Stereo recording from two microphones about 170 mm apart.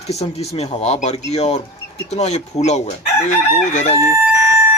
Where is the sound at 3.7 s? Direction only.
40° left (ahead or behind).